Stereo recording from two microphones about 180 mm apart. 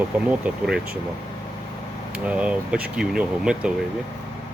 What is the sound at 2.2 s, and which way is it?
Speech, 5° right (ahead or behind).